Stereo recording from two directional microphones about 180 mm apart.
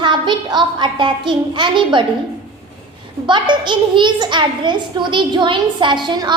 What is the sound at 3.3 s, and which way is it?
A child's voice, 25° right (ahead or behind).